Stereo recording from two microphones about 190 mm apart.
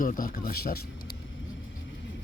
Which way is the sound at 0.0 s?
45° left (ahead or behind).